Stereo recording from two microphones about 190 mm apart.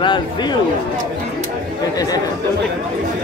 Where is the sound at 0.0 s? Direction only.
25° left (ahead or behind).